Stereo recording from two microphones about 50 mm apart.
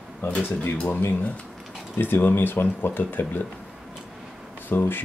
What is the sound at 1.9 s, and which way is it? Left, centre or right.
Speech, left.